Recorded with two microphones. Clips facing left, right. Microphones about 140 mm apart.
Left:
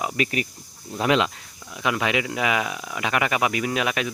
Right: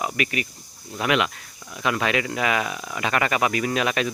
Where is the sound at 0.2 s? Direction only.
35° left (ahead or behind).